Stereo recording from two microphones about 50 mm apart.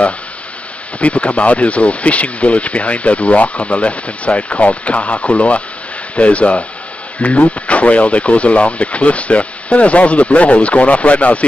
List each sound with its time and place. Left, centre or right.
1.0 s speech: left